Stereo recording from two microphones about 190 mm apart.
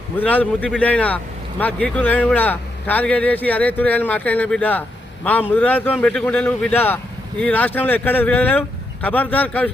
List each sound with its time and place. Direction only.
0.2 s speech: 10° left (ahead or behind)